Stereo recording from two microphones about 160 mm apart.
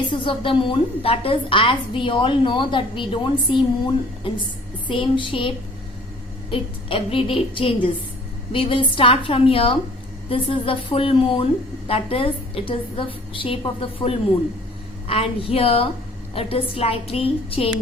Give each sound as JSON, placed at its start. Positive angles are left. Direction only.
{"t": 0.1, "sound": "a woman's voice", "side_deg": 30}